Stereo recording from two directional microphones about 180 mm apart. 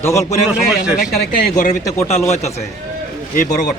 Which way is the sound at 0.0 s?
15° left (ahead or behind).